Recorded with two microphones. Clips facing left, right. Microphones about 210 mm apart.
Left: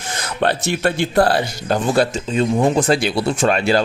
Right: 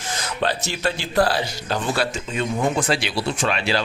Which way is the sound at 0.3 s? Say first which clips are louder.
Left 6 dB; 60° left (ahead or behind).